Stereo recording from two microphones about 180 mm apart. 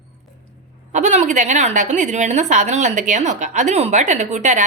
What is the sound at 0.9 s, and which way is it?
A woman's voice, 40° right (ahead or behind).